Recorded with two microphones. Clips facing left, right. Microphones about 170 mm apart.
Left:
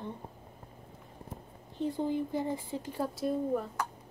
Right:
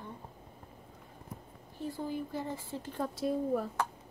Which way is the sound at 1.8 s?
20° left (ahead or behind).